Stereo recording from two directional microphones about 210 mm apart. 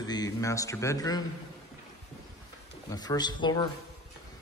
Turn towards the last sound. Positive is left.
turn(degrees=20)  # may be behind; listen again after turning